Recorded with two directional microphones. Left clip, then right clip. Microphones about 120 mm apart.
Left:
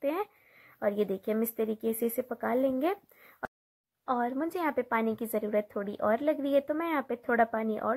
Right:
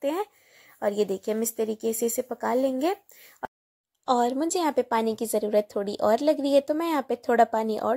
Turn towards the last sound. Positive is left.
turn(degrees=-40)  # may be behind; listen again after turning